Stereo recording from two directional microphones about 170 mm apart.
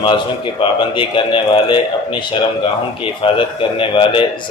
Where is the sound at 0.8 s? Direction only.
30° left (ahead or behind).